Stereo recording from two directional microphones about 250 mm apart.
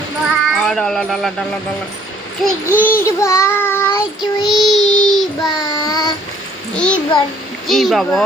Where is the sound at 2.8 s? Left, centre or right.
Centre.